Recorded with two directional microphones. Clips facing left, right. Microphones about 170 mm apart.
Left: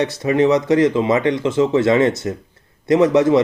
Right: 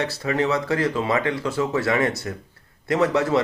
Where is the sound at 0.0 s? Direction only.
20° left (ahead or behind).